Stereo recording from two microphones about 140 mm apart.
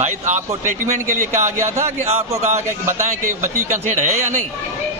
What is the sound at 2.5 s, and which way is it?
Speech, 65° right (ahead or behind).